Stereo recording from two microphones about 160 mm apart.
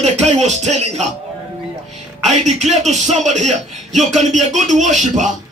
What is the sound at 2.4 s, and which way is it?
Speech, 45° right (ahead or behind).